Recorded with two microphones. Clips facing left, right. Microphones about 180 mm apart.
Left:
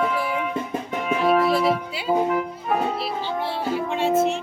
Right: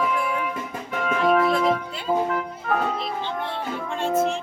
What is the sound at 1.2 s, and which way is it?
Music, 5° left (ahead or behind).